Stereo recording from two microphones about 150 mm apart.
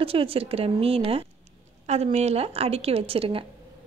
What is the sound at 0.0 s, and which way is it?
A woman's voice, 40° right (ahead or behind).